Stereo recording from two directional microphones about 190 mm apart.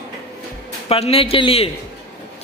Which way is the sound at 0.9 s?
30° left (ahead or behind).